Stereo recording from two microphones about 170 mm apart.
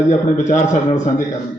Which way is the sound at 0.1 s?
45° left (ahead or behind).